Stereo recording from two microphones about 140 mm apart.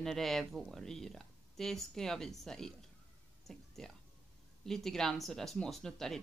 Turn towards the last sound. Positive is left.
turn(degrees=5)  # may be behind; listen again after turning